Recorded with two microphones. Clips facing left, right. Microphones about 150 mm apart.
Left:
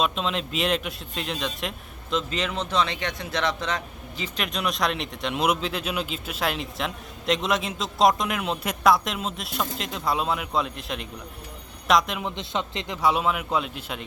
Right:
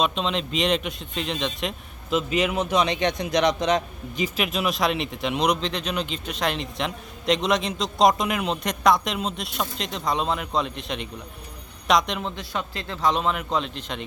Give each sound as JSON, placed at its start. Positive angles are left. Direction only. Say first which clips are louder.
{"t": 0.0, "sound": "speech", "louder": "right 1 dB", "side_deg": 0}
{"t": 4.4, "sound": "speech", "louder": "right 1 dB", "side_deg": -5}
{"t": 12.2, "sound": "speech", "louder": "left 1 dB", "side_deg": 20}
{"t": 13.0, "sound": "a man's voice", "louder": "even", "side_deg": 10}